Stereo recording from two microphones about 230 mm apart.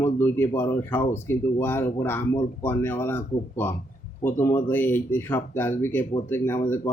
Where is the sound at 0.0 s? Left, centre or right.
Centre.